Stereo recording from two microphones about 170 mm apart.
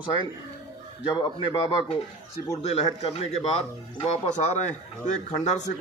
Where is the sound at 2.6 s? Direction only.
40° left (ahead or behind).